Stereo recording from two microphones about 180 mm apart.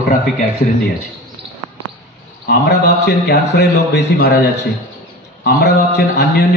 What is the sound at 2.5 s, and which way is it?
Speech, 65° left (ahead or behind).